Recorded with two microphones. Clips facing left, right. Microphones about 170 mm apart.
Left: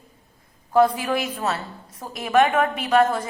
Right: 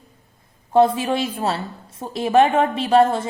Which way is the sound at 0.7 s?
25° right (ahead or behind).